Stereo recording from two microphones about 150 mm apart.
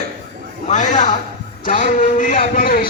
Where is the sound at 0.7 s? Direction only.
55° left (ahead or behind).